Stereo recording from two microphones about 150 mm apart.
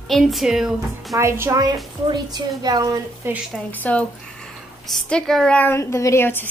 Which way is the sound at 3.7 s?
10° left (ahead or behind).